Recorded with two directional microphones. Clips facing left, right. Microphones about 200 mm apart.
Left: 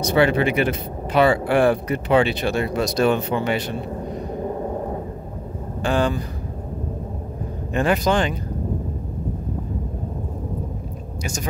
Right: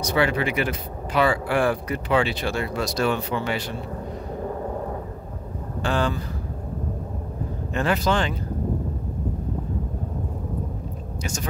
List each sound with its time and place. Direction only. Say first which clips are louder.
0.0 s speech: left 5 dB; 25° left (ahead or behind)
5.8 s a man's voice: left 3 dB; 15° left (ahead or behind)
7.7 s a man's voice: left 3 dB; 15° left (ahead or behind)